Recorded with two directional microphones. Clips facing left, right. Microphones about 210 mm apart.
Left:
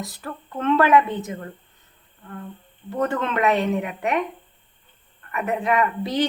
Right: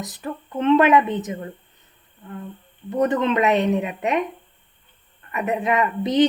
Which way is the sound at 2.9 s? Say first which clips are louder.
Right 4 dB; 20° right (ahead or behind).